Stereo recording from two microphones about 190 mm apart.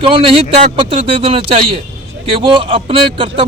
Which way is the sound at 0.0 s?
30° right (ahead or behind).